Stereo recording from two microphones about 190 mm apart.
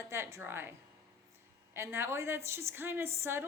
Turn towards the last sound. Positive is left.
turn(degrees=-15)  # may be behind; listen again after turning